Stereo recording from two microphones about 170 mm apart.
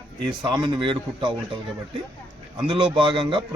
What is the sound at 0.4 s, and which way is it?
Speech, 25° right (ahead or behind).